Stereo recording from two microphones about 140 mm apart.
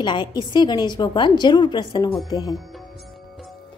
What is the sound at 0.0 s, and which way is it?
A woman's voice, 30° left (ahead or behind).